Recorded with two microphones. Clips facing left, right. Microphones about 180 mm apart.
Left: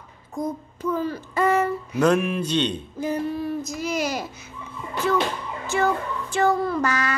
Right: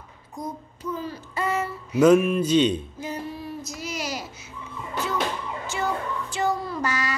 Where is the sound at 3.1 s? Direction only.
50° left (ahead or behind).